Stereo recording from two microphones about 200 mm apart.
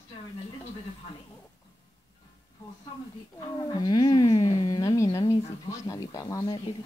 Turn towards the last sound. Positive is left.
turn(degrees=15)  # may be behind; listen again after turning